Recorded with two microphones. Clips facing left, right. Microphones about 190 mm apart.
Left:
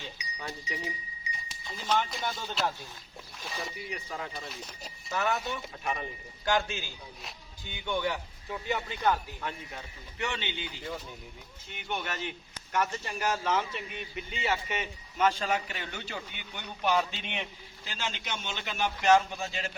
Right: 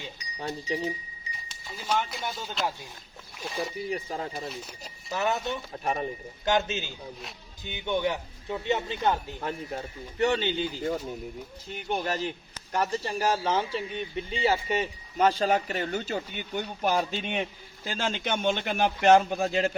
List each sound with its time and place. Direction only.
0.7 s speech: 35° right (ahead or behind)
1.3 s speech: 5° right (ahead or behind)
3.8 s speech: 35° right (ahead or behind)
4.4 s speech: centre (ahead or behind)
5.1 s speech: 20° right (ahead or behind)
5.7 s speech: 40° right (ahead or behind)
6.4 s speech: 20° right (ahead or behind)
9.4 s a man's voice: 40° right (ahead or behind); by 19.6 s 60° right (ahead or behind)